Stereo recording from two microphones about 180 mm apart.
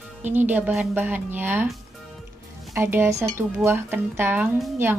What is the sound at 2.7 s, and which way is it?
A woman's voice, 10° right (ahead or behind).